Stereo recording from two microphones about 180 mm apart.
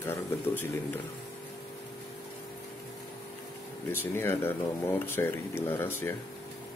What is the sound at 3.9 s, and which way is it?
Speech, 10° left (ahead or behind).